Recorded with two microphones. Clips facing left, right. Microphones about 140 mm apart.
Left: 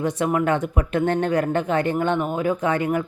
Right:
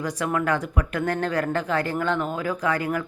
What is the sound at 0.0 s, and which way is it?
Speech, 25° left (ahead or behind).